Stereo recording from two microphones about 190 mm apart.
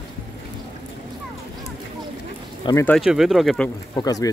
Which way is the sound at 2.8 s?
Centre (ahead or behind).